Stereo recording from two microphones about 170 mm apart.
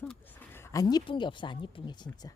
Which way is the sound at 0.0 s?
10° left (ahead or behind).